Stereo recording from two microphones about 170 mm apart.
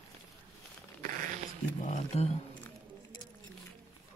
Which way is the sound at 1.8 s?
40° left (ahead or behind).